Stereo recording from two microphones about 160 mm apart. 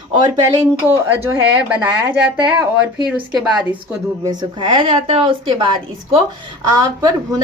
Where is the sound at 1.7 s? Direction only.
10° right (ahead or behind).